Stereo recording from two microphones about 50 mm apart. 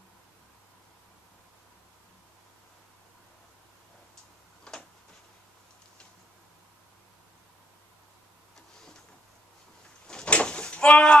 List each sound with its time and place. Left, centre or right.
4.7 s tick-tock: centre
10.0 s door: centre